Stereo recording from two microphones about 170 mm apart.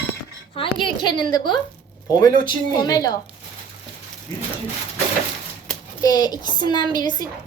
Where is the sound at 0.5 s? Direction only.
30° left (ahead or behind).